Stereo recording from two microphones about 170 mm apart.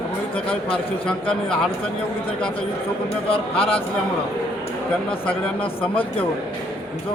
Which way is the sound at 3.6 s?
35° left (ahead or behind).